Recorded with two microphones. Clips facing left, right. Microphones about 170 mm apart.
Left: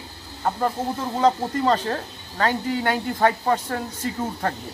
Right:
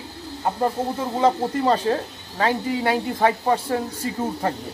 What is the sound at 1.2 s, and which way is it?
Speech, 10° right (ahead or behind).